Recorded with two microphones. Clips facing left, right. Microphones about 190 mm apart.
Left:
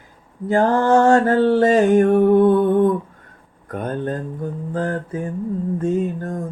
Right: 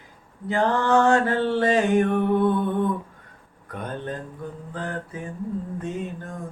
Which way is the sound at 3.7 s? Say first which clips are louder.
Left 7 dB; 45° left (ahead or behind).